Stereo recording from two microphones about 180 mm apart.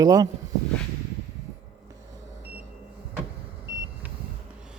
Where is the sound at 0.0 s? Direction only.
20° right (ahead or behind).